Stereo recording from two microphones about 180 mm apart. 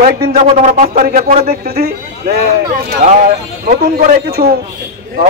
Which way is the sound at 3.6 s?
50° right (ahead or behind).